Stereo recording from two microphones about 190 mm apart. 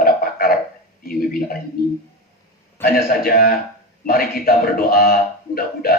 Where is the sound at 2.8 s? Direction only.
50° left (ahead or behind).